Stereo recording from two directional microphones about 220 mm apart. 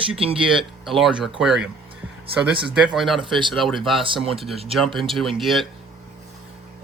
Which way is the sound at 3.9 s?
25° right (ahead or behind).